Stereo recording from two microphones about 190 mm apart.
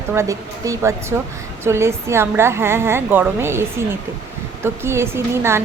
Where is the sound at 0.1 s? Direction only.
15° right (ahead or behind).